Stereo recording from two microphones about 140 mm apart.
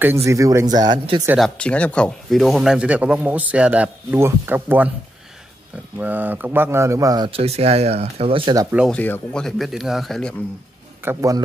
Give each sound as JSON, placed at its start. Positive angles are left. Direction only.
{"t": 0.0, "sound": "speech", "side_deg": -20}
{"t": 1.4, "sound": "speech", "side_deg": 10}
{"t": 5.9, "sound": "speech", "side_deg": -15}
{"t": 7.2, "sound": "speech", "side_deg": -45}
{"t": 8.9, "sound": "speech", "side_deg": 10}
{"t": 11.1, "sound": "speech", "side_deg": -25}